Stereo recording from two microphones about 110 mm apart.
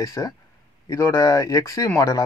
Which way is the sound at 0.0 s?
30° left (ahead or behind).